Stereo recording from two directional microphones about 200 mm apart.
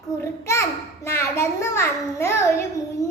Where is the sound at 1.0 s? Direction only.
15° left (ahead or behind).